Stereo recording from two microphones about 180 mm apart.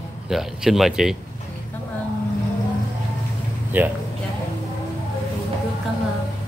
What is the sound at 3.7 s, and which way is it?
Speech, 10° right (ahead or behind).